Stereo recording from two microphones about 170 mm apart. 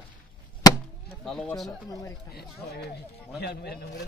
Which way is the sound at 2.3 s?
70° left (ahead or behind).